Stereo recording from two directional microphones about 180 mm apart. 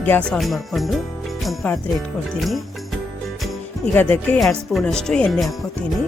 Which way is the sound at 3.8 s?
10° left (ahead or behind).